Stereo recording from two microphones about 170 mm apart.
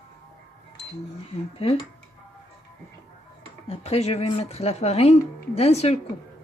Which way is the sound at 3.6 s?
35° left (ahead or behind).